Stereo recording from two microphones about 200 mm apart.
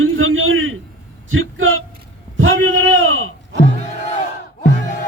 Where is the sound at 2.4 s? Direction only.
75° right (ahead or behind); by 3.6 s 90° right.